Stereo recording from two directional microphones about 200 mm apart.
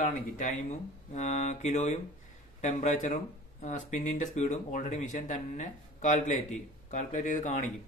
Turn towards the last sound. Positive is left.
turn(degrees=40)  # may be behind; listen again after turning